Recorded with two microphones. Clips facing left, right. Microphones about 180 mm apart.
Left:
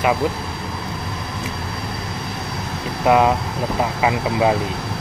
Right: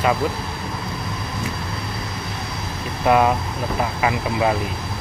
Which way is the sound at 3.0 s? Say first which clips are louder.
Left 1 dB; 15° left (ahead or behind).